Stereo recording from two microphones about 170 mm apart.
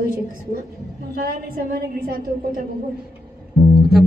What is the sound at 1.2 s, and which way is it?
Speech, 60° right (ahead or behind).